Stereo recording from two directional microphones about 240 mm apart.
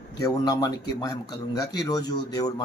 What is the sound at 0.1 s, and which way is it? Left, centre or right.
A man's voice, centre.